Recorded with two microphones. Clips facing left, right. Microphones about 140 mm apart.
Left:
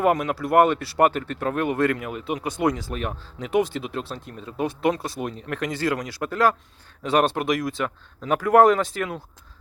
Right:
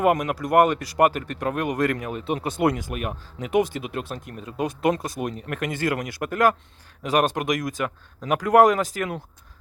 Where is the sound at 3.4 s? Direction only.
50° right (ahead or behind).